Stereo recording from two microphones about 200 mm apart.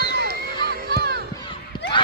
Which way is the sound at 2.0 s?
25° left (ahead or behind).